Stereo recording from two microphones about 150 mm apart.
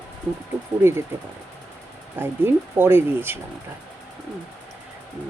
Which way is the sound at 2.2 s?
15° right (ahead or behind).